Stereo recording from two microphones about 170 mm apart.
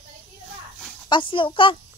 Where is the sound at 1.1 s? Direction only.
30° left (ahead or behind).